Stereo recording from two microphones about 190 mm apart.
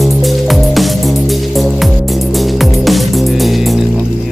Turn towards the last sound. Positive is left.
turn(degrees=0)  # may be behind; listen again after turning